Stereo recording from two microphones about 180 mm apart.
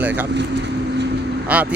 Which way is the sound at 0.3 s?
70° right (ahead or behind).